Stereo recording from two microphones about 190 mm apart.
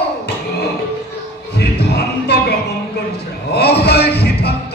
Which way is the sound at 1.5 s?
60° left (ahead or behind).